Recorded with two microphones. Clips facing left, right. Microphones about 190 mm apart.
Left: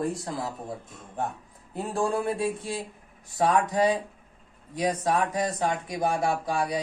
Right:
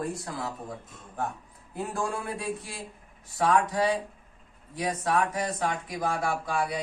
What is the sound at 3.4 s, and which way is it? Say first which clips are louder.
Speech: left 2 dB; 20° left (ahead or behind).